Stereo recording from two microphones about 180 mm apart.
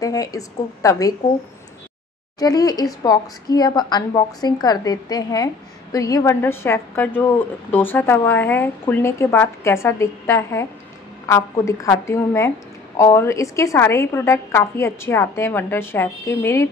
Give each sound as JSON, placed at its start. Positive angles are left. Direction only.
{"t": 0.0, "sound": "a woman's voice", "side_deg": 20}
{"t": 2.3, "sound": "a woman's voice", "side_deg": 20}